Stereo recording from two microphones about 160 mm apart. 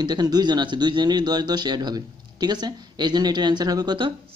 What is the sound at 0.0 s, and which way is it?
Speech, 25° right (ahead or behind).